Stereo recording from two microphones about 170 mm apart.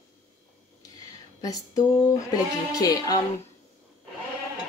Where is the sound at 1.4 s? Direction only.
20° left (ahead or behind).